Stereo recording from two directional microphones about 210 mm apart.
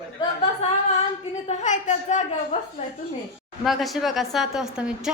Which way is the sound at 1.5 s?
35° left (ahead or behind).